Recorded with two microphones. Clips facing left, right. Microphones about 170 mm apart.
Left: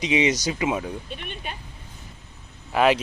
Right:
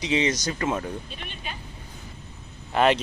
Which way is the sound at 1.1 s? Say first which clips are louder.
Left 3 dB; 55° left (ahead or behind).